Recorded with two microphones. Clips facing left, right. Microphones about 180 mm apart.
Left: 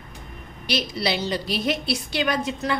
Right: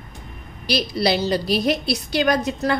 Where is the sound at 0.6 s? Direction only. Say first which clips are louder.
Right 5 dB; 35° right (ahead or behind).